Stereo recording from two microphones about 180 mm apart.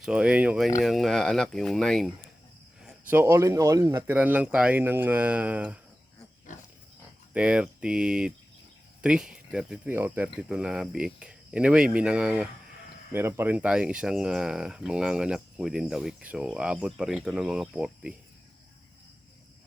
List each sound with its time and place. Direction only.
0.0 s speech: 5° right (ahead or behind)
3.1 s speech: 15° right (ahead or behind)
6.5 s pig: 45° left (ahead or behind)
7.3 s speech: 5° right (ahead or behind)